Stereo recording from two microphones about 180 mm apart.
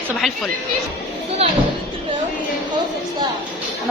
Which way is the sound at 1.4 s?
35° right (ahead or behind).